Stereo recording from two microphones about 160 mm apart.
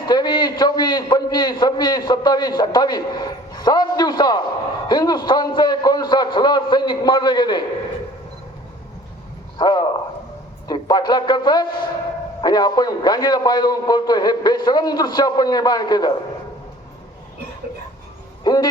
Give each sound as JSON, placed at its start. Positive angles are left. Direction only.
{"t": 0.0, "sound": "a man's voice", "side_deg": 25}
{"t": 9.6, "sound": "a man's voice", "side_deg": 25}
{"t": 18.4, "sound": "a man's voice", "side_deg": 25}